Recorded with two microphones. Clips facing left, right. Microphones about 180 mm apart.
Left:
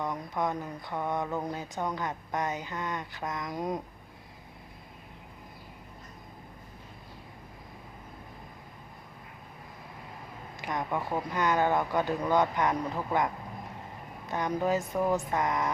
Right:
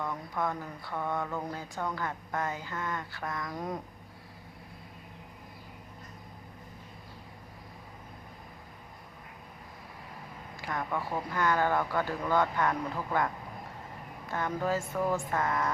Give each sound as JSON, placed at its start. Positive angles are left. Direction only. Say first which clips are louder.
{"t": 0.0, "sound": "speech", "louder": "left 2 dB", "side_deg": 20}
{"t": 10.6, "sound": "speech", "louder": "left 2 dB", "side_deg": 20}